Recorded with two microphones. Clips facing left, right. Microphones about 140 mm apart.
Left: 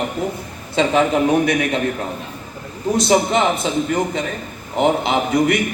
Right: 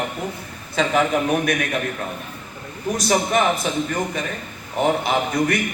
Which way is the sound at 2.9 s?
25° left (ahead or behind).